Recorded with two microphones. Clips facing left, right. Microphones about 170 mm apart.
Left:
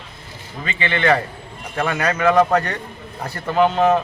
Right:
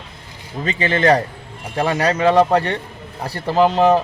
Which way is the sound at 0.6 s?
40° right (ahead or behind).